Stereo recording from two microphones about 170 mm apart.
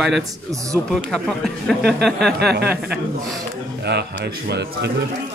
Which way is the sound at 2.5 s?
75° right (ahead or behind).